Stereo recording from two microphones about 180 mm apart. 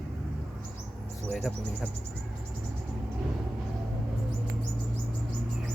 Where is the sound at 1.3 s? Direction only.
Centre (ahead or behind).